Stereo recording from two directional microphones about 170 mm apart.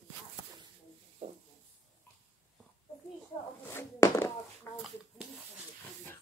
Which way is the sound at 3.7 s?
15° left (ahead or behind).